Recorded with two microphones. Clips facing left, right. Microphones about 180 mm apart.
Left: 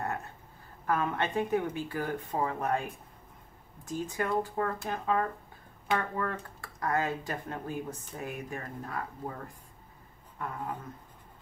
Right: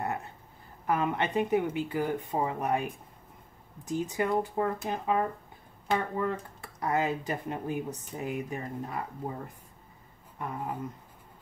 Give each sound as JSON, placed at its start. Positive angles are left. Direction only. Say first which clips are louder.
{"t": 0.8, "sound": "speech", "louder": "right 2 dB", "side_deg": -15}